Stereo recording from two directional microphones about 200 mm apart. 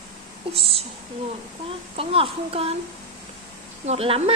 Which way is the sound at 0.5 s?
30° right (ahead or behind).